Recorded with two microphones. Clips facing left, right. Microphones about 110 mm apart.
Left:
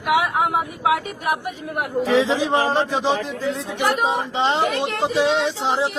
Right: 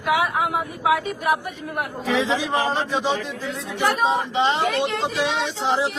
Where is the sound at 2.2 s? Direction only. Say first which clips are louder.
Left 3 dB; 30° left (ahead or behind).